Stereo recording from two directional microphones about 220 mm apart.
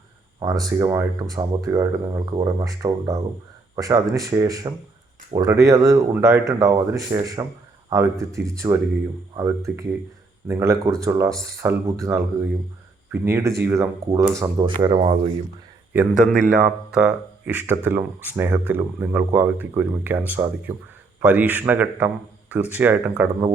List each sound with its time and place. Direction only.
0.3 s speech: 15° right (ahead or behind)
15.9 s a man's voice: 5° right (ahead or behind)